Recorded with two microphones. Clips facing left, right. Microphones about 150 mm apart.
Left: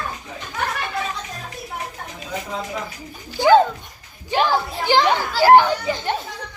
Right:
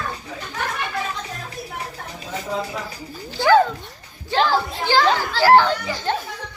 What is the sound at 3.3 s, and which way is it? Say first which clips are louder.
A child's voice: left 2 dB; 20° left (ahead or behind).